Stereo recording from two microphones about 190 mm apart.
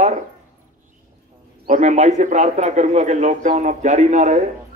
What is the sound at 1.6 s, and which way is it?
A man's voice, 40° right (ahead or behind).